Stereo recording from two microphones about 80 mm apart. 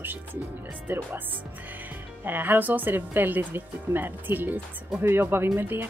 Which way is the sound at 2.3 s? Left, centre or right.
Right.